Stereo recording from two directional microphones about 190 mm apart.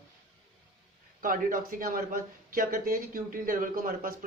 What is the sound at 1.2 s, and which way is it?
Speech, 45° right (ahead or behind).